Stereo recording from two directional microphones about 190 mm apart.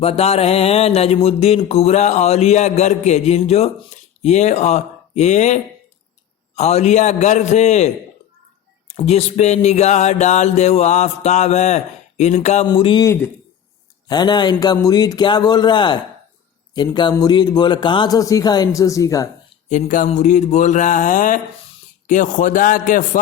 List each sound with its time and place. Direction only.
0.0 s mantra: 30° left (ahead or behind)
6.6 s mantra: 35° left (ahead or behind)
12.6 s a man's voice: 25° left (ahead or behind)
19.6 s mantra: 40° left (ahead or behind)
22.0 s a man's voice: 40° left (ahead or behind)